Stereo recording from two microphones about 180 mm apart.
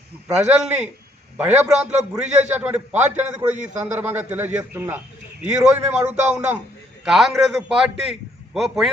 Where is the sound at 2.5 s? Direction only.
10° right (ahead or behind).